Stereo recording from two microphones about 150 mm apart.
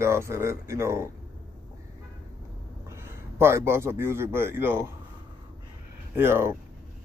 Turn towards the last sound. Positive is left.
turn(degrees=-15)  # may be behind; listen again after turning